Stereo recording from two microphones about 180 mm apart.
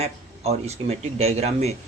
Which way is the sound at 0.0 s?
35° right (ahead or behind).